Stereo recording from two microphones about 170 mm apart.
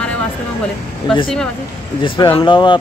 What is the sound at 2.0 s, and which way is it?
Speech, 30° left (ahead or behind).